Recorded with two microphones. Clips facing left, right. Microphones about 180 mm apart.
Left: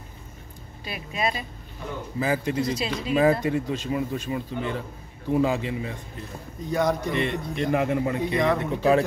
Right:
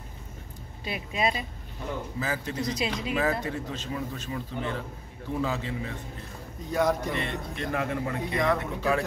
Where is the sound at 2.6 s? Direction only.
20° right (ahead or behind).